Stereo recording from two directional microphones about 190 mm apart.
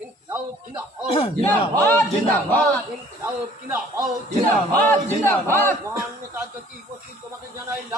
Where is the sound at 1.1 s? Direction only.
30° left (ahead or behind).